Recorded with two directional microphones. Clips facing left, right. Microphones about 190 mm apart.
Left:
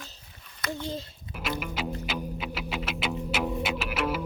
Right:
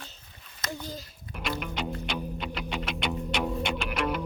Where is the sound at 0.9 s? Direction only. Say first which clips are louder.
Left 5 dB; 25° left (ahead or behind).